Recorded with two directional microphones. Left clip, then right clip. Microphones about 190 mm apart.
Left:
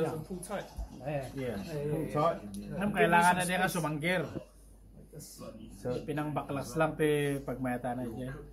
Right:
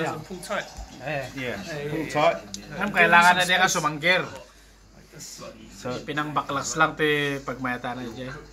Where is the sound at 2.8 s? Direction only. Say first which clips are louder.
Right 9 dB; 15° left (ahead or behind).